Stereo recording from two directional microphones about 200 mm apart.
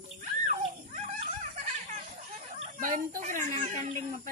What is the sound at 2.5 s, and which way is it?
Chicken, 40° right (ahead or behind).